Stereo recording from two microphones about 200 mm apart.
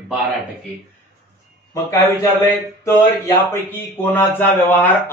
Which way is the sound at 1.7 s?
15° left (ahead or behind).